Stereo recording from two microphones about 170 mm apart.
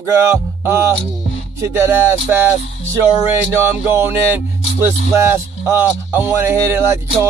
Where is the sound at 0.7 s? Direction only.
15° right (ahead or behind).